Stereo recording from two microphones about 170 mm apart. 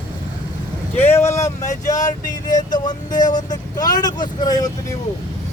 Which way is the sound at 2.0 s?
45° left (ahead or behind).